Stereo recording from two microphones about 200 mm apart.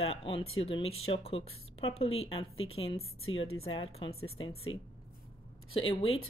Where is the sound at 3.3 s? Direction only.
75° left (ahead or behind).